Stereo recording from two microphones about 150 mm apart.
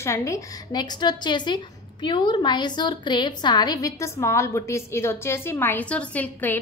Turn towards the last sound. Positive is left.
turn(degrees=10)  # may be behind; listen again after turning